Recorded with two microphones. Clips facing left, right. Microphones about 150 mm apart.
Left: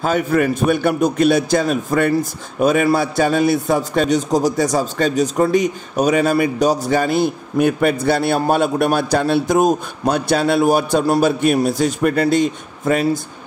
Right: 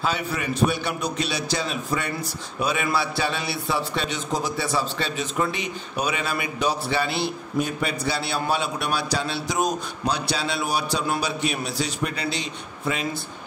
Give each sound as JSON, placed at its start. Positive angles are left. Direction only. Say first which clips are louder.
{"t": 0.0, "sound": "a man's voice", "louder": "left 10 dB", "side_deg": 50}